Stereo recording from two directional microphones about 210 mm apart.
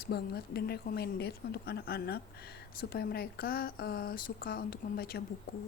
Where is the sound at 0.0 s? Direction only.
45° left (ahead or behind).